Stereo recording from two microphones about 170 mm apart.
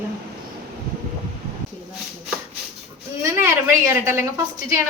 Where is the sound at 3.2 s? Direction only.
15° right (ahead or behind).